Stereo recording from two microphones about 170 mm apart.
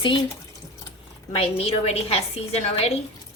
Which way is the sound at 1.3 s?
35° left (ahead or behind).